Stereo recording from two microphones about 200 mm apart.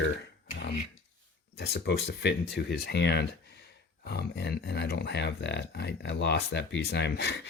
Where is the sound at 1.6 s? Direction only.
55° left (ahead or behind).